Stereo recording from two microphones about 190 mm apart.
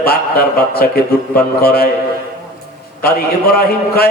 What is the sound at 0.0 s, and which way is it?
A man's voice, 55° left (ahead or behind).